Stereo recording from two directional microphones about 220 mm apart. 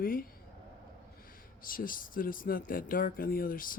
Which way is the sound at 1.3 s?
40° left (ahead or behind).